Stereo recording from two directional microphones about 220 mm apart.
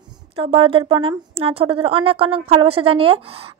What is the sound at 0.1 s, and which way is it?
A woman's voice, 25° right (ahead or behind).